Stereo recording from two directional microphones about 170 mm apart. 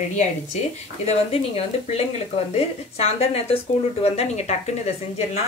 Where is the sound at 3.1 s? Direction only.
35° left (ahead or behind).